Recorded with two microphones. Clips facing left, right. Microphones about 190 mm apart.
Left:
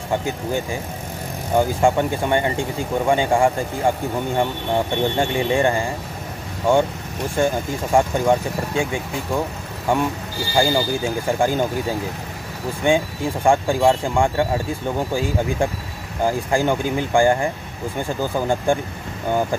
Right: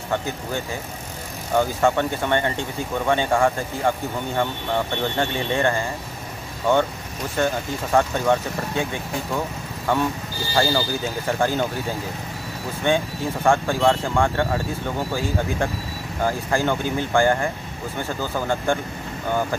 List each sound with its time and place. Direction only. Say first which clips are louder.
0.1 s speech: left 3 dB; 15° left (ahead or behind)
12.8 s speech: left 3 dB; 15° left (ahead or behind)
16.3 s speech: left 3 dB; 15° left (ahead or behind)